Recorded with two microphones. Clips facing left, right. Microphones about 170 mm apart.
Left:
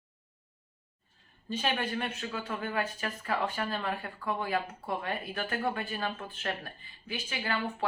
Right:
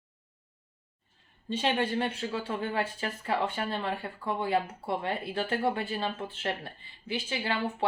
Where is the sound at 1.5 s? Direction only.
25° right (ahead or behind).